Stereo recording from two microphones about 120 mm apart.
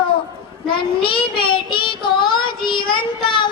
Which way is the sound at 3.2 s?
45° left (ahead or behind).